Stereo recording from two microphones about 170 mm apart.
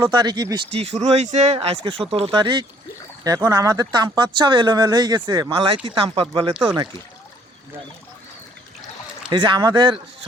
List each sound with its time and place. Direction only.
0.0 s speech: 25° right (ahead or behind)
0.7 s speech: 35° right (ahead or behind)
9.3 s speech: 25° right (ahead or behind)